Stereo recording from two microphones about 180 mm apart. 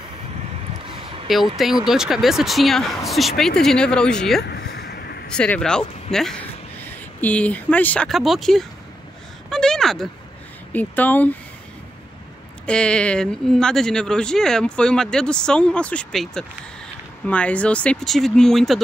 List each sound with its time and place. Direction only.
1.3 s speech: centre (ahead or behind)
4.4 s a sound: 60° left (ahead or behind)
5.3 s speech: 5° left (ahead or behind)
9.5 s a sound: 5° left (ahead or behind)
10.7 s speech: 10° left (ahead or behind)
12.6 s speech: 5° left (ahead or behind)